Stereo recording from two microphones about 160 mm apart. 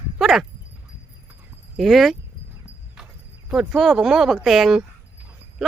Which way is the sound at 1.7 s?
Centre (ahead or behind).